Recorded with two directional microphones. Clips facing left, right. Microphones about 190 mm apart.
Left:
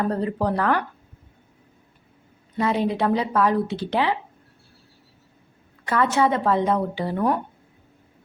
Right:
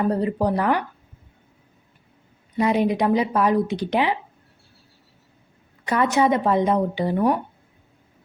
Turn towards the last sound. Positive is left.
turn(degrees=-15)  # may be behind; listen again after turning